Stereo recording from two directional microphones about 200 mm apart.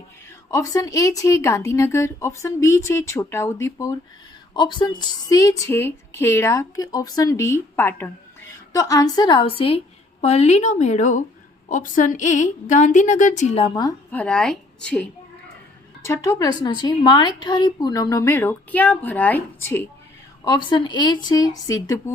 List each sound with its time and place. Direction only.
0.5 s a woman's voice: 15° left (ahead or behind)
14.1 s a woman's voice: 5° left (ahead or behind)
16.0 s a woman's voice: 15° left (ahead or behind)
20.4 s a woman's voice: 20° left (ahead or behind)